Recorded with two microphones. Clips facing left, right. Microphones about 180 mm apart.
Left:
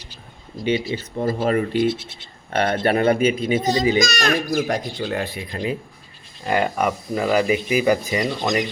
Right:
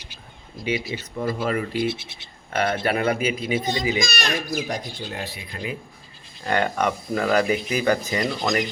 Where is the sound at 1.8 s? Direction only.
10° right (ahead or behind).